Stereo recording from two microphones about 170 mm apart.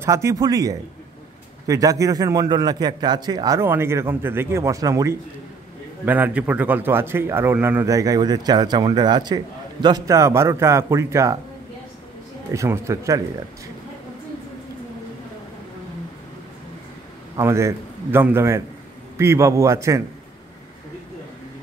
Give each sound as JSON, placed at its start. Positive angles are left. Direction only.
{"t": 0.0, "sound": "a man's voice", "side_deg": -15}
{"t": 6.0, "sound": "a man's voice", "side_deg": -10}
{"t": 12.5, "sound": "a man's voice", "side_deg": -15}
{"t": 17.4, "sound": "a man's voice", "side_deg": -15}